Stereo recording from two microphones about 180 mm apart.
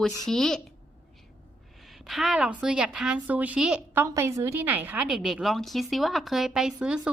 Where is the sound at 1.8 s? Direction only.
Centre (ahead or behind).